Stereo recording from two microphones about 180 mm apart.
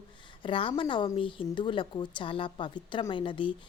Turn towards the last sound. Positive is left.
turn(degrees=25)  # may be behind; listen again after turning